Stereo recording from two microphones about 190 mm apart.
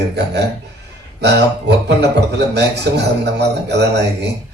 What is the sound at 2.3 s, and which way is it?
A man's voice, 60° right (ahead or behind).